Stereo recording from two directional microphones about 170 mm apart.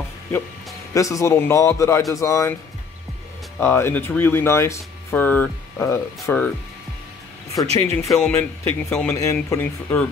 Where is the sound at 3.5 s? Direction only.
15° left (ahead or behind).